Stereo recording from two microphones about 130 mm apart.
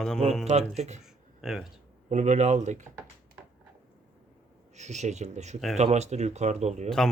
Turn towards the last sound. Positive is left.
turn(degrees=-60)  # may be behind; listen again after turning